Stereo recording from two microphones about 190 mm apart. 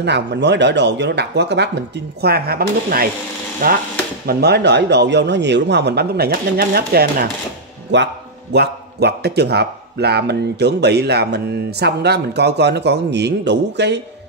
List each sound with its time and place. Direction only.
0.0 s speech: 65° right (ahead or behind)
7.9 s a man's voice: 70° right (ahead or behind)